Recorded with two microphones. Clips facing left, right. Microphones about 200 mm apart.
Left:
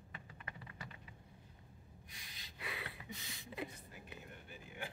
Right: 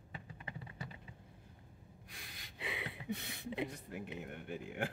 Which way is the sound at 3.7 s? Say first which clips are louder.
Right 10 dB; 70° right (ahead or behind).